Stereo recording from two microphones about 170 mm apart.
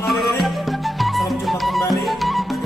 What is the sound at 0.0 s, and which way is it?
Music, centre (ahead or behind).